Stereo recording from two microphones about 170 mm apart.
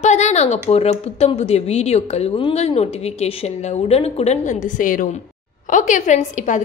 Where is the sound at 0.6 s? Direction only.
40° left (ahead or behind).